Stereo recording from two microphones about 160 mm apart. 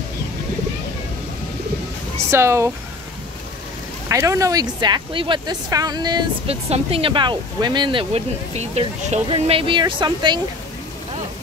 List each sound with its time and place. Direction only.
2.3 s speech: 15° right (ahead or behind)
4.1 s speech: 20° right (ahead or behind)
6.4 s speech: 40° right (ahead or behind)